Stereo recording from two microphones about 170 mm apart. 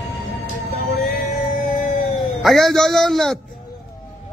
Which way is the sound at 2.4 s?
Centre (ahead or behind).